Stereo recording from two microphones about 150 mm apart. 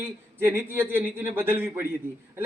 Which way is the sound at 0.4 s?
15° right (ahead or behind).